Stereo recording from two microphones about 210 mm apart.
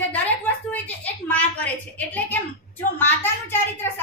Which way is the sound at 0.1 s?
10° left (ahead or behind).